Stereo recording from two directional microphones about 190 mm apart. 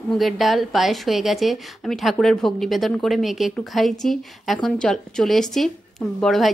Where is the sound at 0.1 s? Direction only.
Centre (ahead or behind).